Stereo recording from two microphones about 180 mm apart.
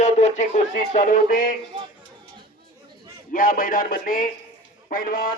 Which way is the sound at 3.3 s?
50° left (ahead or behind).